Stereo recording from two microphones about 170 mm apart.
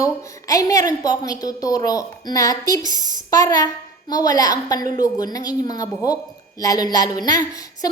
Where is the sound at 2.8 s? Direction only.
50° right (ahead or behind).